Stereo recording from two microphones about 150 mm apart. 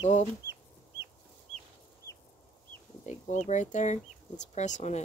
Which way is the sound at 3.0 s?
50° left (ahead or behind).